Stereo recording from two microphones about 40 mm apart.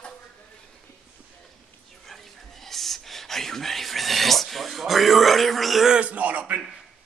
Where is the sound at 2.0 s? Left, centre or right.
Centre.